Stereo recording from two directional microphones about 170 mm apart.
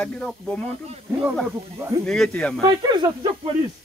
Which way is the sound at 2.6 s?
25° right (ahead or behind).